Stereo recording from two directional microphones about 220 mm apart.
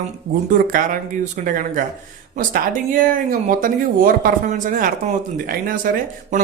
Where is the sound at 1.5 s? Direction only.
40° right (ahead or behind).